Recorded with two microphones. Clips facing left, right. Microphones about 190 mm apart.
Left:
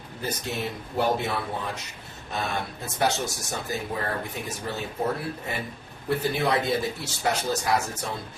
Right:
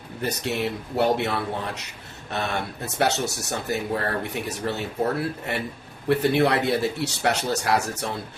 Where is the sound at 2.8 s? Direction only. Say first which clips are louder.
Right 2 dB; 70° right (ahead or behind).